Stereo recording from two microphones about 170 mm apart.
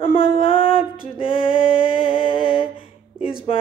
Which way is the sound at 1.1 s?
30° left (ahead or behind).